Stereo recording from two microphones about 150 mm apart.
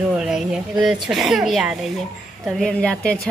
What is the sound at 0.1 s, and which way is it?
A woman's voice, 5° right (ahead or behind).